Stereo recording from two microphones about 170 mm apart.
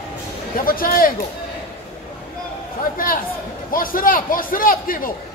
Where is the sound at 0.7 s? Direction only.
55° left (ahead or behind).